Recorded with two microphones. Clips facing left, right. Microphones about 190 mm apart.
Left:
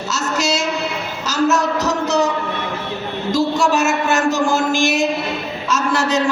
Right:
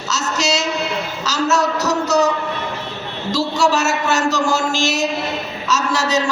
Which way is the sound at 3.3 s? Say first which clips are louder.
Left 1 dB; 55° left (ahead or behind).